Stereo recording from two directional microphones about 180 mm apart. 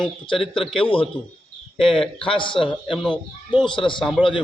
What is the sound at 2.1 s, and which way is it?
Speech, 30° left (ahead or behind).